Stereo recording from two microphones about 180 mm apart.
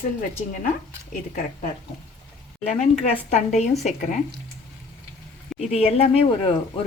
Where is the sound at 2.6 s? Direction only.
40° left (ahead or behind).